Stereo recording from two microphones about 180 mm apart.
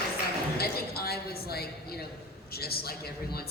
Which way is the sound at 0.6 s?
60° left (ahead or behind).